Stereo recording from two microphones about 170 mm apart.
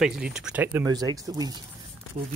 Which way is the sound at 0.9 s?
20° right (ahead or behind).